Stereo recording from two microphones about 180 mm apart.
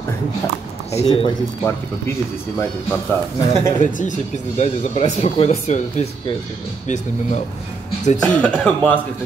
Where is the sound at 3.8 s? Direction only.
45° left (ahead or behind).